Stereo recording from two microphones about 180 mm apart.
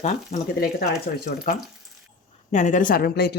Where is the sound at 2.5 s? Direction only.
40° left (ahead or behind); by 3.3 s 60° left (ahead or behind).